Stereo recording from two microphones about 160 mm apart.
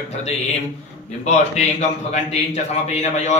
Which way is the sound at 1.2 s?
45° left (ahead or behind).